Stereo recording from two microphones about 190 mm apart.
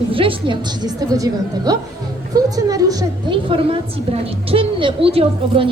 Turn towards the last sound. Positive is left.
turn(degrees=-30)  # may be behind; listen again after turning